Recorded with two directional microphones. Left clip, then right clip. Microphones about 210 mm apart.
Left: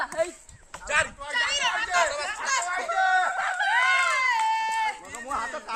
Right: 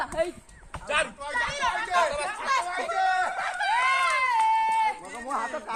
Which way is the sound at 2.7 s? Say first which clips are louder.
Left 2 dB; 30° right (ahead or behind).